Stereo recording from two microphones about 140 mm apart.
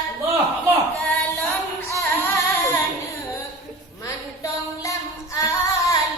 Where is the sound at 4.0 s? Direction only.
25° left (ahead or behind).